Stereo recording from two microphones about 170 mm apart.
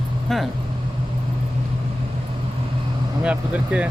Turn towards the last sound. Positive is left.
turn(degrees=-5)  # may be behind; listen again after turning